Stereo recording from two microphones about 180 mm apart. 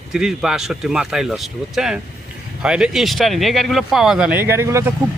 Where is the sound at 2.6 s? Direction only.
5° right (ahead or behind).